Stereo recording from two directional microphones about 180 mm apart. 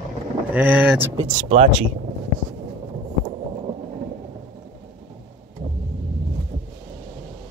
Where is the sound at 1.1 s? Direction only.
35° right (ahead or behind).